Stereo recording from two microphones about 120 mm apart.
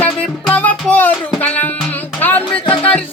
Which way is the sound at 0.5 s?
15° left (ahead or behind).